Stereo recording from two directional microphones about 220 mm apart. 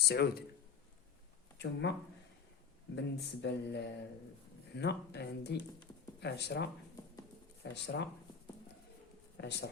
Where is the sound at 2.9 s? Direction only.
50° left (ahead or behind).